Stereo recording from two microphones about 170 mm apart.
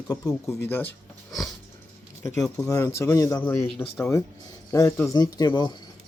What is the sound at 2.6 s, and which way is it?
Speech, 20° left (ahead or behind).